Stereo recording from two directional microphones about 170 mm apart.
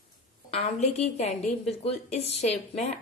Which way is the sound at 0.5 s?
40° left (ahead or behind).